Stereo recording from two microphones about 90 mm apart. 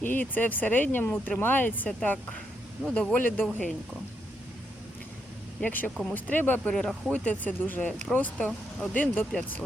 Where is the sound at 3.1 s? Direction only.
20° left (ahead or behind).